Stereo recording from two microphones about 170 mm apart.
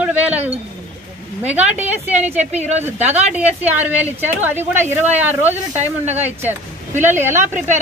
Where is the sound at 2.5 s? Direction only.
40° right (ahead or behind).